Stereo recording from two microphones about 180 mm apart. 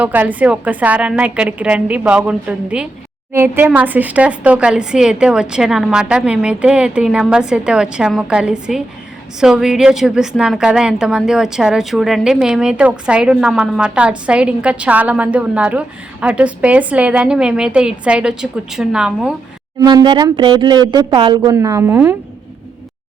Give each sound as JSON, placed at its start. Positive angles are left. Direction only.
{"t": 0.0, "sound": "a woman's voice", "side_deg": -10}
{"t": 19.8, "sound": "speech", "side_deg": -20}